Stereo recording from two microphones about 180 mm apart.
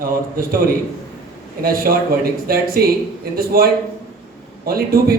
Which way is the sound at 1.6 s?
55° right (ahead or behind).